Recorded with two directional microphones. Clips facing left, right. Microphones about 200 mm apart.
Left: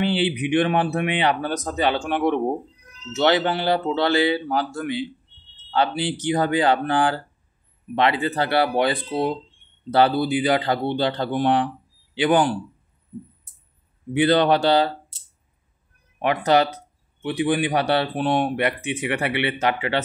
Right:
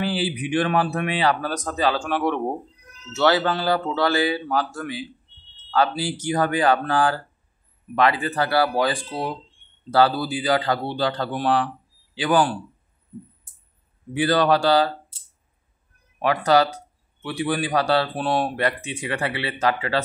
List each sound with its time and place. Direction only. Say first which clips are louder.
0.0 s speech: left 3 dB; 25° left (ahead or behind)
14.1 s speech: left 2 dB; 25° left (ahead or behind)
16.2 s speech: even; 20° left (ahead or behind)